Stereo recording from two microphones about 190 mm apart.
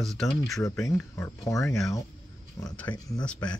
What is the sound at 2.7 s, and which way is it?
Speech, 5° left (ahead or behind).